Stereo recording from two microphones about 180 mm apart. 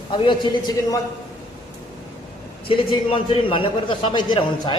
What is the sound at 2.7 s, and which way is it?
A man's voice, 30° left (ahead or behind).